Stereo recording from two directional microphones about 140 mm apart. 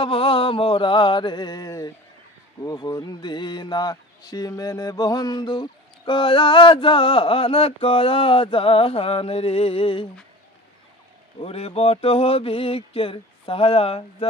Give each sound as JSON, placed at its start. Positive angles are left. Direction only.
{"t": 0.0, "sound": "speech", "side_deg": 40}
{"t": 11.3, "sound": "mantra", "side_deg": 45}